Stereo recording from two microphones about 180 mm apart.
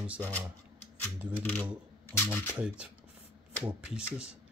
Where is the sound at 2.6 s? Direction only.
5° right (ahead or behind).